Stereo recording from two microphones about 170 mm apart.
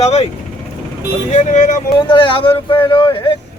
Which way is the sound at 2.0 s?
30° left (ahead or behind).